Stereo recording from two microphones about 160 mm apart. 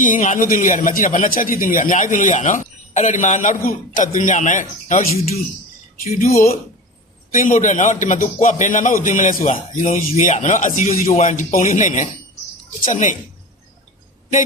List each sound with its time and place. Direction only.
0.0 s a man's voice: 55° left (ahead or behind)